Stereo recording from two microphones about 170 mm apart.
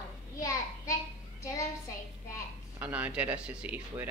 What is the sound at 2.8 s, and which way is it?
Speech, 10° right (ahead or behind).